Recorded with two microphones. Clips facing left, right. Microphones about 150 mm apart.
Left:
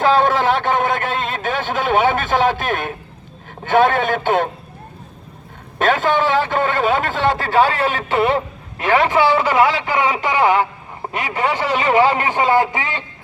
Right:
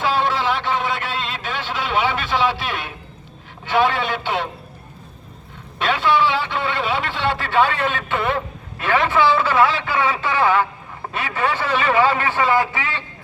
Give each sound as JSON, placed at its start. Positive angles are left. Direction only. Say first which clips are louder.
{"t": 0.0, "sound": "a sound", "louder": "left 5 dB", "side_deg": 50}
{"t": 3.6, "sound": "a man's voice", "louder": "left 4 dB", "side_deg": 50}
{"t": 5.8, "sound": "a man's voice", "louder": "left 2 dB", "side_deg": 45}
{"t": 8.8, "sound": "a man's voice", "louder": "left 3 dB", "side_deg": 15}